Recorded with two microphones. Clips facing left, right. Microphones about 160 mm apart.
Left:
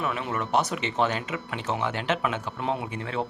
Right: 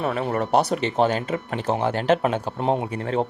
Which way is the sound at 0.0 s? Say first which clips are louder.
Right 6 dB; 40° right (ahead or behind).